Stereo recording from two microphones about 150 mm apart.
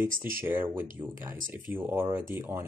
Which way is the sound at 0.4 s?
15° right (ahead or behind).